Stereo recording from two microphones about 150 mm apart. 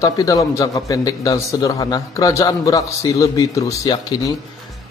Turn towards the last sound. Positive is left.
turn(degrees=25)  # may be behind; listen again after turning